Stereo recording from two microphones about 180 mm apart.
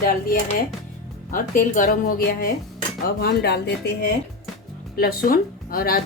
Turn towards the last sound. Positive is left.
turn(degrees=55)  # may be behind; listen again after turning